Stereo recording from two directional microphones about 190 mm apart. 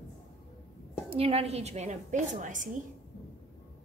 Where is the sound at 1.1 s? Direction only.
30° right (ahead or behind).